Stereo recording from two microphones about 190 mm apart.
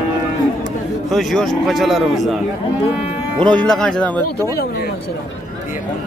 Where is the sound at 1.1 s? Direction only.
Centre (ahead or behind).